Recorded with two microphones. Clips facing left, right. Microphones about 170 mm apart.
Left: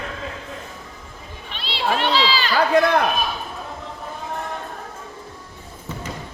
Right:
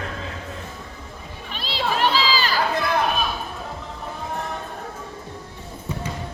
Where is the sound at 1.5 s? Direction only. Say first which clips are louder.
Left 2 dB; 40° right (ahead or behind).